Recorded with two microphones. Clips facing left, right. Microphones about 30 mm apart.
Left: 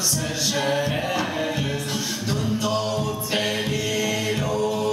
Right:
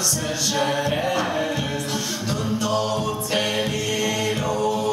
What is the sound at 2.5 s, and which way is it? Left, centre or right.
A capella, centre.